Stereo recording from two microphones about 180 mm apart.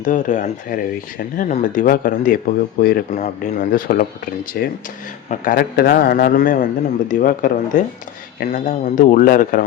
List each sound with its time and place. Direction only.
0.0 s a man's voice: 45° left (ahead or behind)
3.2 s a man's voice: 45° left (ahead or behind)